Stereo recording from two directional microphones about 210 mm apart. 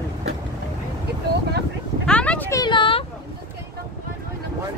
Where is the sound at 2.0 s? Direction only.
5° left (ahead or behind); by 3.0 s 25° left (ahead or behind).